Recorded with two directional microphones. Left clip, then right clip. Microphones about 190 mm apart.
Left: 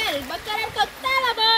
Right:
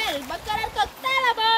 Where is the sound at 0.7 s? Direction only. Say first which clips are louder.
Left 2 dB; 40° left (ahead or behind).